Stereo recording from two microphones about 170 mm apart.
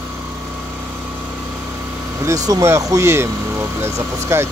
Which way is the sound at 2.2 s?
20° right (ahead or behind).